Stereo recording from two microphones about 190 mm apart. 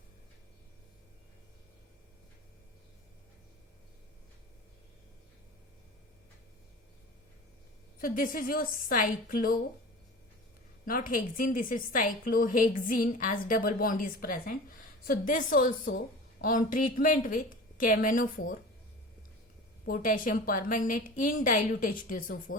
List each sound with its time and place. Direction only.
7.9 s a woman's voice: 50° left (ahead or behind)
10.8 s a woman's voice: 45° left (ahead or behind)
19.8 s a woman's voice: 45° left (ahead or behind)